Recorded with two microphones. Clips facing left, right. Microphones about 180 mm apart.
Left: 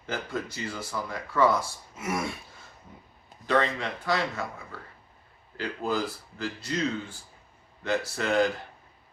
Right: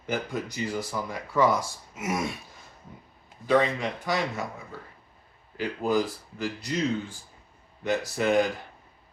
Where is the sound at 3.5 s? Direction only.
10° right (ahead or behind).